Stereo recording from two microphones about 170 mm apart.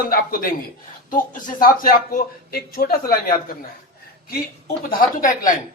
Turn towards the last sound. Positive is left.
turn(degrees=50)  # may be behind; listen again after turning